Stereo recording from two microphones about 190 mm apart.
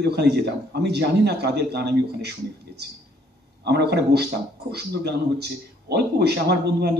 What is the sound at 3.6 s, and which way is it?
A man's voice, 60° right (ahead or behind).